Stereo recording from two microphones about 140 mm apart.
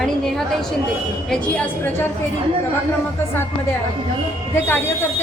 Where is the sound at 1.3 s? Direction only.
10° left (ahead or behind).